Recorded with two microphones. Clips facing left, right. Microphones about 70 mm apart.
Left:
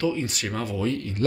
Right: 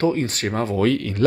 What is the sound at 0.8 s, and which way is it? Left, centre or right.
Speech, right.